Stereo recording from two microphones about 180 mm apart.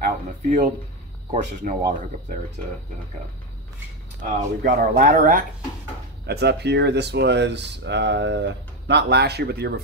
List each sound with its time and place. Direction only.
0.0 s speech: 45° right (ahead or behind)
4.6 s speech: 50° right (ahead or behind)
6.2 s speech: 65° right (ahead or behind)